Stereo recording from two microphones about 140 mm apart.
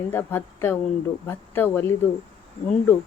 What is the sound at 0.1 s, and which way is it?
Speech, 15° left (ahead or behind).